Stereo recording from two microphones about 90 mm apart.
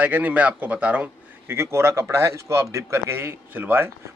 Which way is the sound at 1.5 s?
30° right (ahead or behind).